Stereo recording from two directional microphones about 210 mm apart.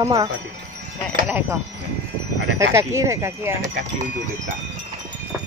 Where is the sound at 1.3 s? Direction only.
10° right (ahead or behind).